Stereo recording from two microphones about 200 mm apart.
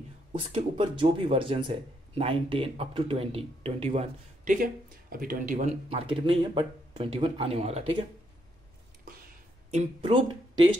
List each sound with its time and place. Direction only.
0.3 s speech: 30° right (ahead or behind)
5.1 s speech: 45° right (ahead or behind); by 8.0 s 30° right (ahead or behind)
9.7 s speech: 30° right (ahead or behind)